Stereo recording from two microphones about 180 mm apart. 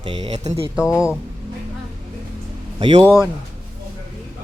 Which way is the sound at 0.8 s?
15° left (ahead or behind).